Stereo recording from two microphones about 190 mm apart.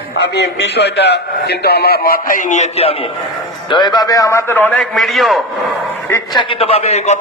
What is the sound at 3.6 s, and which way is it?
A man's voice, 25° left (ahead or behind).